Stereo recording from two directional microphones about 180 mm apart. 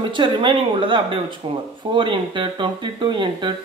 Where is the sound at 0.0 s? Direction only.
25° right (ahead or behind).